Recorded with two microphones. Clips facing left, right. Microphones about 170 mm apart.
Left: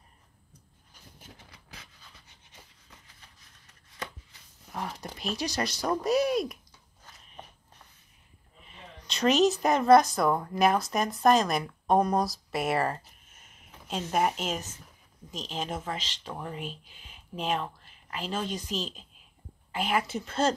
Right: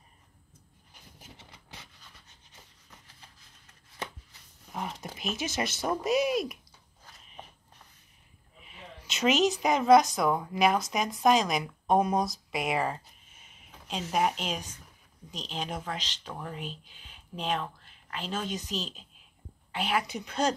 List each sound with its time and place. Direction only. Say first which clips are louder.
1.3 s a sound: right 2 dB; 25° right (ahead or behind)
4.7 s a woman's voice: even; centre (ahead or behind)
8.6 s a woman's voice: right 1 dB; 5° right (ahead or behind)